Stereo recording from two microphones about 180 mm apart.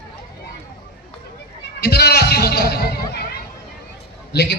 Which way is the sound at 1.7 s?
60° left (ahead or behind).